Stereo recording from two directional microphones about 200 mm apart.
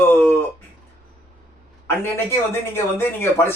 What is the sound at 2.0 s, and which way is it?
Speech, 10° left (ahead or behind).